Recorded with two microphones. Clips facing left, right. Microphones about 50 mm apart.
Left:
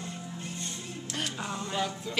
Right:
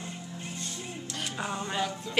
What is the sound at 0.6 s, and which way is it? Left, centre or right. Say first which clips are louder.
Music: right 1 dB; left.